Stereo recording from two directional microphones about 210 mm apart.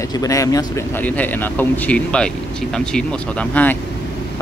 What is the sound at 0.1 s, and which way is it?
Speech, 15° left (ahead or behind).